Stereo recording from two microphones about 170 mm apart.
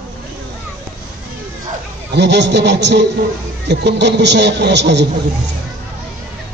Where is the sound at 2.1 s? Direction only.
90° right.